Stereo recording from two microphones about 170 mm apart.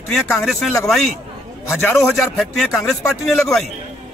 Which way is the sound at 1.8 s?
15° left (ahead or behind).